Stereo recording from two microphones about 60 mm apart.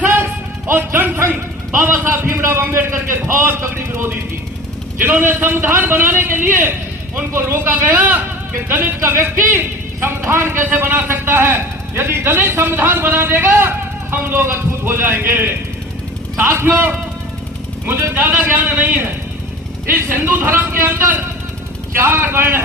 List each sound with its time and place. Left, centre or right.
0.7 s music: right
1.8 s a man's voice: right
4.9 s a man's voice: right
7.9 s a man's voice: right